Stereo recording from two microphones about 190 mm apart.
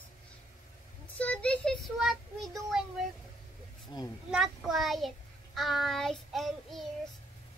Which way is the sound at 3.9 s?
20° left (ahead or behind).